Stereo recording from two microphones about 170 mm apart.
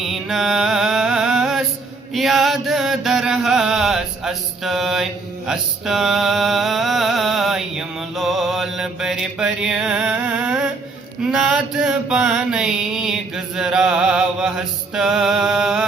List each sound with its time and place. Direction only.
0.0 s a sound: centre (ahead or behind)
2.1 s mantra: centre (ahead or behind)
5.5 s music: centre (ahead or behind)
11.2 s mantra: 5° right (ahead or behind)